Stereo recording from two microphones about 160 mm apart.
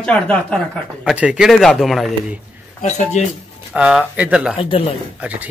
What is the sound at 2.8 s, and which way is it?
Speech, 45° left (ahead or behind).